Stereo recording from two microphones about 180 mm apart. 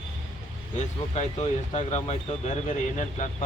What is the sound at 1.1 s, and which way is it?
Speech, 40° left (ahead or behind).